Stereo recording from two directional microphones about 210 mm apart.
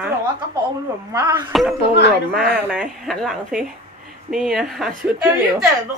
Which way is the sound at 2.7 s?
Centre (ahead or behind).